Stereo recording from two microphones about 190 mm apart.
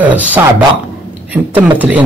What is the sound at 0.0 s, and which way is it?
Speech, 10° right (ahead or behind).